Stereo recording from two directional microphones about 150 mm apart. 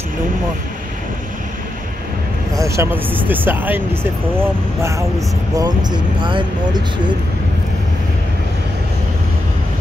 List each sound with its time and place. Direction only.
2.5 s speech: 20° right (ahead or behind)
5.6 s speech: 30° right (ahead or behind)